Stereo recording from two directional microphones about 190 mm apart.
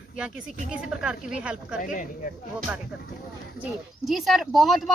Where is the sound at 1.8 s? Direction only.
45° left (ahead or behind).